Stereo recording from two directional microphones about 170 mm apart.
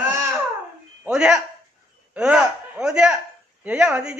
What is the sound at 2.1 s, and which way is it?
A man's voice, 5° right (ahead or behind).